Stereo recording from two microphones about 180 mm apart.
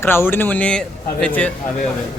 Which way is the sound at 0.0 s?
10° left (ahead or behind).